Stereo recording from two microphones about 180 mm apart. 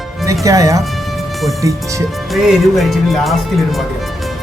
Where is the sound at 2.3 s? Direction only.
Centre (ahead or behind).